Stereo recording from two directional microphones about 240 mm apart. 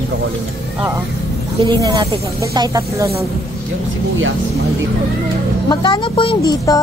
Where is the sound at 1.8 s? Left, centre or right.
Centre.